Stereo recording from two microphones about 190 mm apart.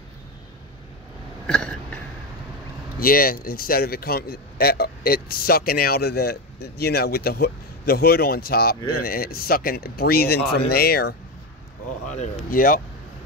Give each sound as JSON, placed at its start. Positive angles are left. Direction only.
{"t": 1.5, "sound": "a sound", "side_deg": 5}
{"t": 3.0, "sound": "a man's voice", "side_deg": 50}
{"t": 12.1, "sound": "a man's voice", "side_deg": 45}